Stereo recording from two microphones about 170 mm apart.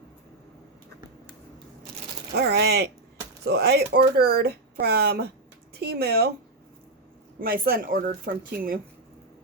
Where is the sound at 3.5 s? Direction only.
70° right (ahead or behind).